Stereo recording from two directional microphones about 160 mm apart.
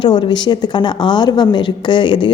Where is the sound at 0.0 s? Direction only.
30° left (ahead or behind).